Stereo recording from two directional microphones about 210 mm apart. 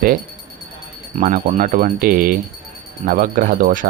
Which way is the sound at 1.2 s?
35° right (ahead or behind).